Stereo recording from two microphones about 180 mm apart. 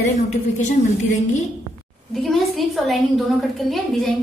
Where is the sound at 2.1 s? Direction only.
Centre (ahead or behind).